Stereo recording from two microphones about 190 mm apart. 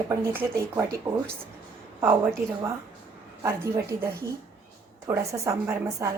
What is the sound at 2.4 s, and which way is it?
Speech, 50° right (ahead or behind).